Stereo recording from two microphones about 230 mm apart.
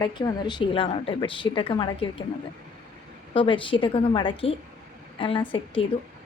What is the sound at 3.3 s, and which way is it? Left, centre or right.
Speech, left.